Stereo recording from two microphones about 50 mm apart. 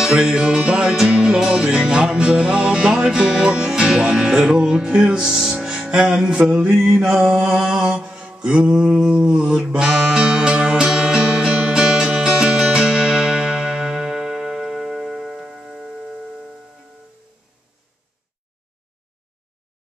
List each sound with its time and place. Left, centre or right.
0.0 s mantra: centre
1.1 s music: right
1.4 s mantra: centre
5.6 s music: centre
6.3 s mantra: centre
7.0 s mantra: centre
10.9 s music: centre